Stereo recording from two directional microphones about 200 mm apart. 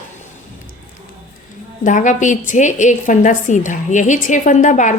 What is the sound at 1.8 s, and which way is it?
A woman's voice, 40° left (ahead or behind).